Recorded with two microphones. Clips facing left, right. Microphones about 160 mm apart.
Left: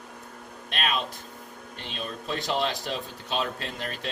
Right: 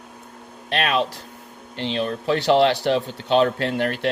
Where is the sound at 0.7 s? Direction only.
85° right.